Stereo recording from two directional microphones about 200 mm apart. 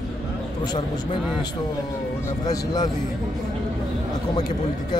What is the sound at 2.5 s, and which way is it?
Speech, 20° left (ahead or behind).